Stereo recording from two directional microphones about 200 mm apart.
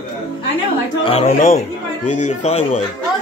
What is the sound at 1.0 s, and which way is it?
Speech, 30° left (ahead or behind).